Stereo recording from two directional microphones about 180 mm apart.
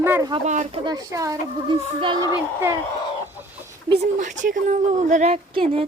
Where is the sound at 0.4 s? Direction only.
40° right (ahead or behind).